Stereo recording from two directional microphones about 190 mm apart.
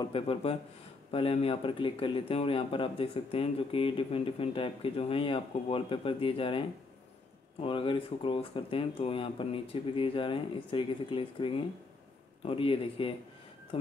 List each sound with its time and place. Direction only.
0.0 s speech: 30° left (ahead or behind)
7.6 s speech: 25° left (ahead or behind)